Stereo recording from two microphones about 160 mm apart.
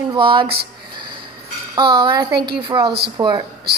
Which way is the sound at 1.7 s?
25° right (ahead or behind).